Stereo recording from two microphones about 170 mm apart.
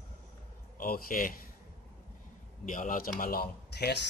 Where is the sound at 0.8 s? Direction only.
55° left (ahead or behind).